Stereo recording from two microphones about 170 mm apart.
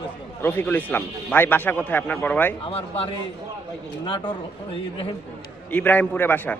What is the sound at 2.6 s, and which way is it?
A man's voice, 35° left (ahead or behind).